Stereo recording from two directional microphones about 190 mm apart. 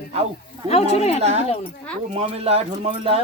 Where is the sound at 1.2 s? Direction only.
35° right (ahead or behind).